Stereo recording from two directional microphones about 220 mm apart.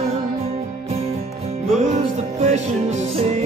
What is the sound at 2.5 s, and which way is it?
Music, 30° right (ahead or behind).